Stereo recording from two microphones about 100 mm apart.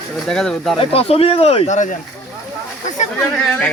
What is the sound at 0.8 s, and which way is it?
Speech, 75° left (ahead or behind).